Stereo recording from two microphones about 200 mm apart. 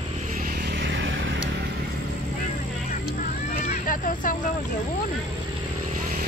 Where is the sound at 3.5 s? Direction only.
45° left (ahead or behind).